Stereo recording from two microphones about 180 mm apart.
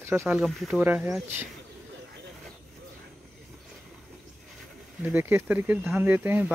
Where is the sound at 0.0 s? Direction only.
15° right (ahead or behind).